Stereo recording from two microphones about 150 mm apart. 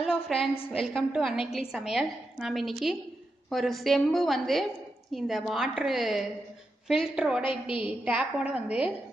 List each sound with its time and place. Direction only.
0.0 s a woman's voice: centre (ahead or behind)
7.4 s a woman's voice: 35° left (ahead or behind)
7.8 s a woman's voice: 10° right (ahead or behind)